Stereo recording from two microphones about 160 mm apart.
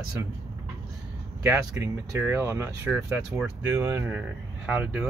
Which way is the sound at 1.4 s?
20° right (ahead or behind).